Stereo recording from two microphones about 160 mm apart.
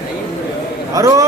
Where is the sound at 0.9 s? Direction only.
20° right (ahead or behind).